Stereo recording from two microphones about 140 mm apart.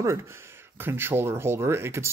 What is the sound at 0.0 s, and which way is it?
Speech, 20° right (ahead or behind).